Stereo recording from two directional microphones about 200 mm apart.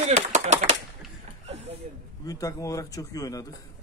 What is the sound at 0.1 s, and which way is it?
Typewriter, 35° right (ahead or behind).